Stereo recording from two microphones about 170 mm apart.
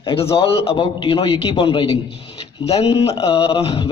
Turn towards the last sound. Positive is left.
turn(degrees=35)  # may be behind; listen again after turning